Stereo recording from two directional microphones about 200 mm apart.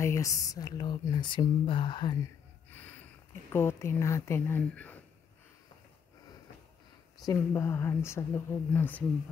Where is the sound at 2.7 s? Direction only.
10° left (ahead or behind).